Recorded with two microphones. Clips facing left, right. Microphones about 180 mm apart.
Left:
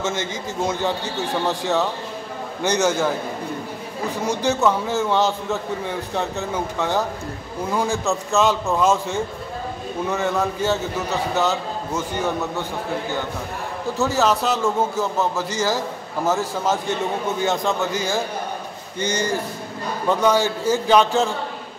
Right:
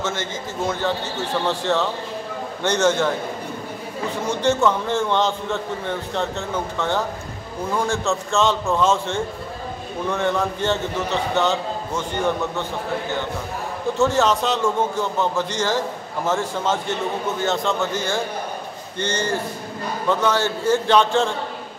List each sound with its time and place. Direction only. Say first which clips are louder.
0.0 s a man's voice: left 1 dB; 15° left (ahead or behind)
1.7 s a man's voice: even; 5° left (ahead or behind)
4.4 s a man's voice: right 1 dB; 5° left (ahead or behind)
13.9 s a man's voice: right 1 dB; 5° left (ahead or behind)